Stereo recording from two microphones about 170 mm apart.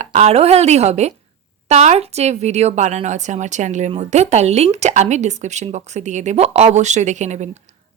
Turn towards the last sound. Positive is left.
turn(degrees=-45)  # may be behind; listen again after turning